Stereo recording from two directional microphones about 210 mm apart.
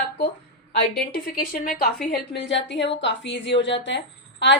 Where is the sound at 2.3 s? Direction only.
55° left (ahead or behind).